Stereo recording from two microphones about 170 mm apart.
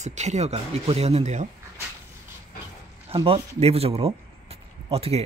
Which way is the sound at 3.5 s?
35° right (ahead or behind).